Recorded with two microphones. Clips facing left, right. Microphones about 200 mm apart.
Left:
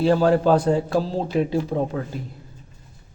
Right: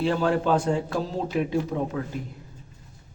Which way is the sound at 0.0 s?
40° left (ahead or behind).